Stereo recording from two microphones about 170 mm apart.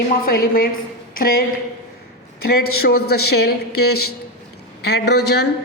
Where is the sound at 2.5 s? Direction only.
65° left (ahead or behind).